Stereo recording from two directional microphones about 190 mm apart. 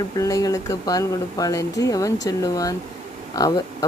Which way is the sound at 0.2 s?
20° left (ahead or behind).